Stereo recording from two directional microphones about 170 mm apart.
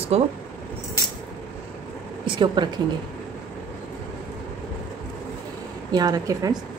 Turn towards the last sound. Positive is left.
turn(degrees=-20)  # may be behind; listen again after turning